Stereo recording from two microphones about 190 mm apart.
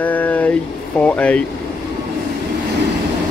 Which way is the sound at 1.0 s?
5° left (ahead or behind).